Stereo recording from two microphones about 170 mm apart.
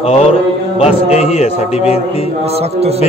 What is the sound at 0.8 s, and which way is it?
A man's voice, 35° left (ahead or behind).